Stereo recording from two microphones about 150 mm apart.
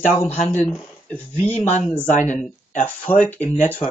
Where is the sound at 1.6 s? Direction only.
50° left (ahead or behind).